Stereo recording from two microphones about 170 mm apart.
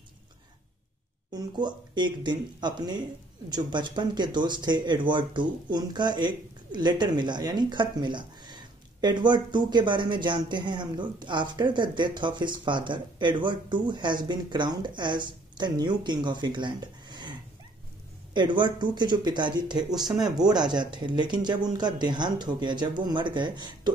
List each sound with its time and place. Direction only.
1.3 s speech: 25° right (ahead or behind)
20.0 s speech: centre (ahead or behind)
20.2 s speech: 25° right (ahead or behind)